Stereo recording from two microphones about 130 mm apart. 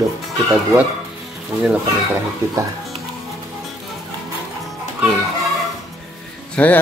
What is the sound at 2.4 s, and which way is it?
Speech, 25° right (ahead or behind).